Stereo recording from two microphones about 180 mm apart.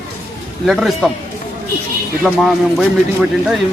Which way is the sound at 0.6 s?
Centre (ahead or behind).